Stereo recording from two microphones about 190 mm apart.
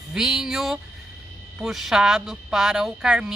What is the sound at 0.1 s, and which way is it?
Speech, centre (ahead or behind).